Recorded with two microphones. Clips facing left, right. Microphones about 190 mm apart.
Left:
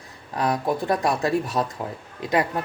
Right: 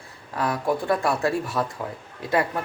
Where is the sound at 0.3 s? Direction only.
20° left (ahead or behind).